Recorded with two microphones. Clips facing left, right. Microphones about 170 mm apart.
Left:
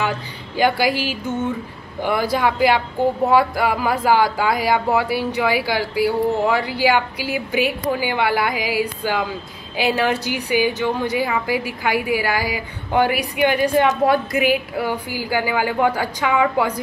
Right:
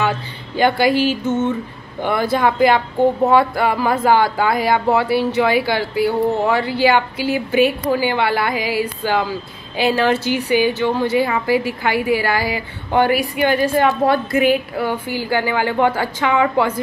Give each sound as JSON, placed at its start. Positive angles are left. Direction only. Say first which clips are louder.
{"t": 0.6, "sound": "speech", "louder": "right 3 dB", "side_deg": 10}
{"t": 1.2, "sound": "a sound", "louder": "right 5 dB", "side_deg": -25}
{"t": 2.3, "sound": "speech", "louder": "right 4 dB", "side_deg": 10}